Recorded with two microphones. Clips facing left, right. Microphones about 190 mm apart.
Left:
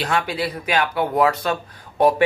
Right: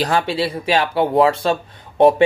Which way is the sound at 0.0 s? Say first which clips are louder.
Right 4 dB; 30° right (ahead or behind).